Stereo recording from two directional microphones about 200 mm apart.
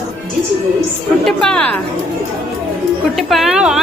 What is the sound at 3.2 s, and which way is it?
Speech, centre (ahead or behind).